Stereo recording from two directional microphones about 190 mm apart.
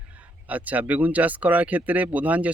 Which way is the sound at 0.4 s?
10° right (ahead or behind).